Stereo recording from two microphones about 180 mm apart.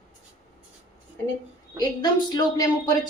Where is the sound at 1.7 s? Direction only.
25° left (ahead or behind).